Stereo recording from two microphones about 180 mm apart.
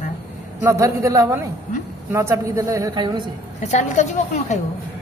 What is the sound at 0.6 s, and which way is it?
A woman's voice, 15° right (ahead or behind).